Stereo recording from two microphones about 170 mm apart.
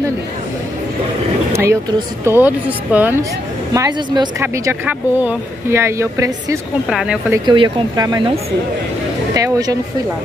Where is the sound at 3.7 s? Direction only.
20° right (ahead or behind).